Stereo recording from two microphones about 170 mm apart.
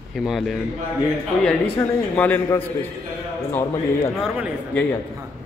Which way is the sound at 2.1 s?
10° left (ahead or behind).